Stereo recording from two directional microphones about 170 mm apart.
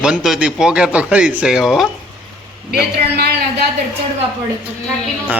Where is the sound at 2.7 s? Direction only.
70° right (ahead or behind).